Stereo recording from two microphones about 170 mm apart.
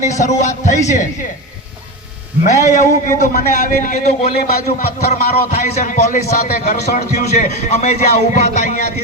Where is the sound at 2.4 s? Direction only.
45° left (ahead or behind).